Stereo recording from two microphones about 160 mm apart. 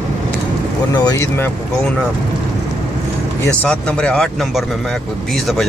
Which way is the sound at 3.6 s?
5° left (ahead or behind).